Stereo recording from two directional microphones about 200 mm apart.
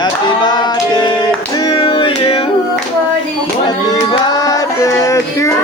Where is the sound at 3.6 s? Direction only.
20° left (ahead or behind).